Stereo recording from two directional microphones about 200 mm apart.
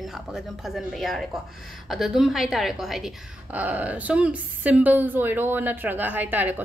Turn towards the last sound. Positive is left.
turn(degrees=-10)  # may be behind; listen again after turning